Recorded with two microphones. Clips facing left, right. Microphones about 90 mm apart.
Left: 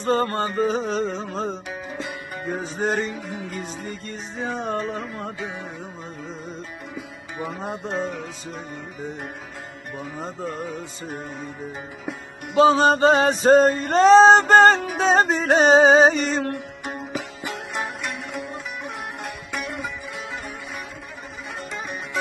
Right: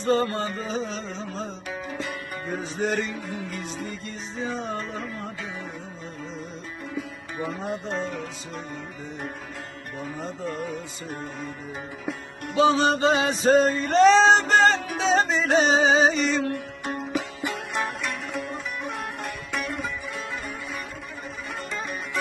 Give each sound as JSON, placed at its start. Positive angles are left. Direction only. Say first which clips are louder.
{"t": 0.0, "sound": "male singing", "louder": "left 2 dB", "side_deg": 40}
{"t": 2.7, "sound": "music", "louder": "left 2 dB", "side_deg": 40}
{"t": 3.8, "sound": "male singing", "louder": "left 2 dB", "side_deg": 50}
{"t": 12.5, "sound": "male singing", "louder": "left 4 dB", "side_deg": 40}
{"t": 16.8, "sound": "music", "louder": "right 4 dB", "side_deg": 10}
{"t": 21.7, "sound": "music", "louder": "left 1 dB", "side_deg": 15}